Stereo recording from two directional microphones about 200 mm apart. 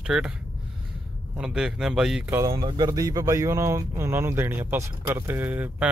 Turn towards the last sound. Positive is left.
turn(degrees=-10)  # may be behind; listen again after turning